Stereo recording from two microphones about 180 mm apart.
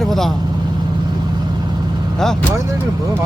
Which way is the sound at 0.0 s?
Centre (ahead or behind).